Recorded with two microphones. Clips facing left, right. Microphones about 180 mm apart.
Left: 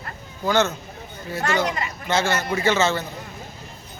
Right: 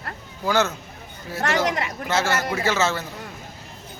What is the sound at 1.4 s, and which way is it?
Speech, 75° right (ahead or behind).